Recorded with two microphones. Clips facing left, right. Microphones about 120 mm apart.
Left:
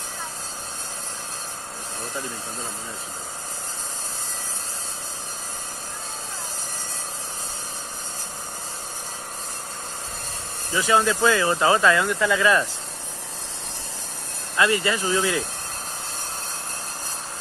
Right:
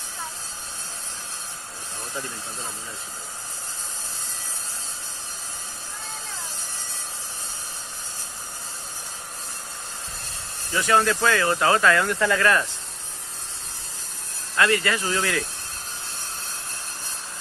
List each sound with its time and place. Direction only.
10.7 s speech: 15° left (ahead or behind)
12.0 s speech: 10° left (ahead or behind)
14.6 s speech: 20° left (ahead or behind)